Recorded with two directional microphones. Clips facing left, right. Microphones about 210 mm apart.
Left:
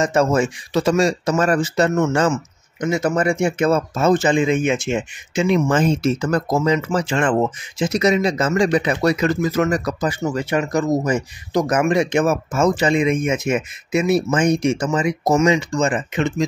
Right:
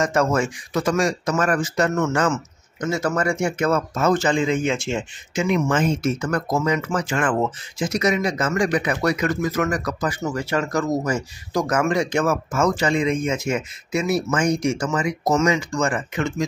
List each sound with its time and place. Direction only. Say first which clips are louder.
0.0 s speech: left 3 dB; 25° left (ahead or behind)
5.5 s speech: left 3 dB; 35° left (ahead or behind)